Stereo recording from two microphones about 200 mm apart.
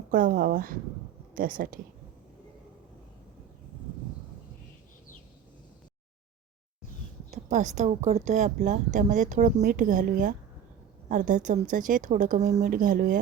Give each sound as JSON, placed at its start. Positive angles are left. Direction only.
{"t": 0.1, "sound": "speech", "side_deg": -45}
{"t": 7.3, "sound": "a woman's voice", "side_deg": -35}